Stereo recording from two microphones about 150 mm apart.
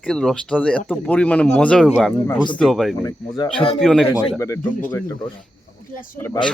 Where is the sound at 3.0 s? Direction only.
25° left (ahead or behind).